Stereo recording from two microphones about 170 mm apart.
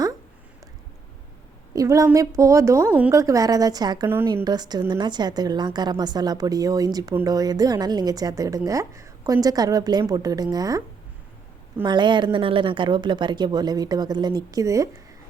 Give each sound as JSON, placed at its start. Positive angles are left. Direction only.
{"t": 1.7, "sound": "a woman's voice", "side_deg": -20}
{"t": 4.1, "sound": "a woman's voice", "side_deg": -15}
{"t": 11.9, "sound": "a woman's voice", "side_deg": -25}